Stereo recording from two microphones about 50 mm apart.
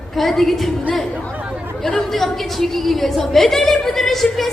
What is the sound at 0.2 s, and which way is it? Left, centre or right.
Speech, centre.